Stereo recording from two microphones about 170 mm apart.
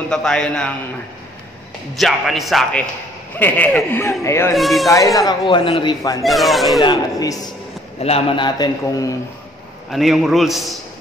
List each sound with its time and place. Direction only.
0.1 s a man's voice: 5° left (ahead or behind)
2.0 s a man's voice: centre (ahead or behind); by 4.6 s 15° left (ahead or behind)
4.6 s a man's voice: centre (ahead or behind)
4.8 s a man's voice: 20° left (ahead or behind)
6.2 s a man's voice: centre (ahead or behind)
6.8 s a man's voice: 25° left (ahead or behind)
8.0 s a man's voice: 35° left (ahead or behind)
9.8 s a man's voice: centre (ahead or behind)